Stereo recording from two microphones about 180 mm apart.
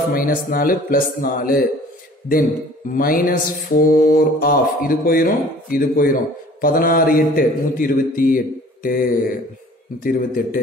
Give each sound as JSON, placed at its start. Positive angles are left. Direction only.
{"t": 0.1, "sound": "mantra", "side_deg": 50}
{"t": 2.9, "sound": "mantra", "side_deg": 50}